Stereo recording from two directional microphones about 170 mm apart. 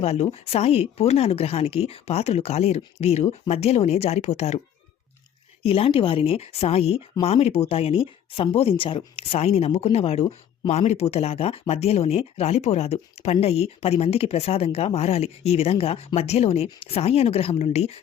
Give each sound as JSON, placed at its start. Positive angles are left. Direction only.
{"t": 0.0, "sound": "speech", "side_deg": 40}
{"t": 5.6, "sound": "speech", "side_deg": 35}